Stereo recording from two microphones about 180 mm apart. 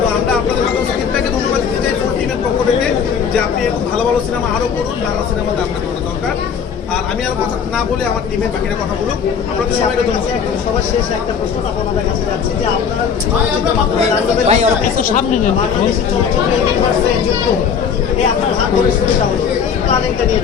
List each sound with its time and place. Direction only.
14.4 s speech: 35° right (ahead or behind)